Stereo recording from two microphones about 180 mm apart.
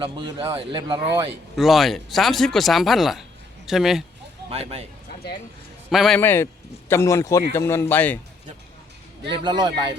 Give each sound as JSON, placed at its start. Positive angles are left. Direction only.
{"t": 0.0, "sound": "speech", "side_deg": -25}
{"t": 1.5, "sound": "speech", "side_deg": 0}
{"t": 4.4, "sound": "a man's voice", "side_deg": -35}
{"t": 5.9, "sound": "speech", "side_deg": 0}
{"t": 6.1, "sound": "speech", "side_deg": 10}
{"t": 9.3, "sound": "speech", "side_deg": -25}